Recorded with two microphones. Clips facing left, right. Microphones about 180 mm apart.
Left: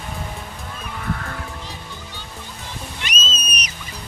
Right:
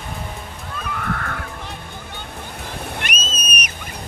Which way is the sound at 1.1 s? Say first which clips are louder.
Left 2 dB; 60° right (ahead or behind).